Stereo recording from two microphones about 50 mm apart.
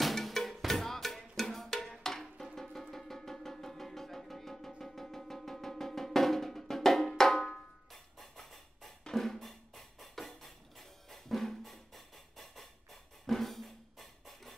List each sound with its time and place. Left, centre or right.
0.0 s music: centre
7.9 s drum: centre